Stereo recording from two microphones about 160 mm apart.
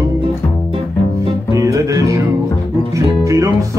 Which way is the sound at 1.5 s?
20° right (ahead or behind).